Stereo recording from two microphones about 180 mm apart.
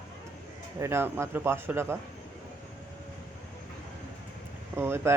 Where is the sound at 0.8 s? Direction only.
15° right (ahead or behind).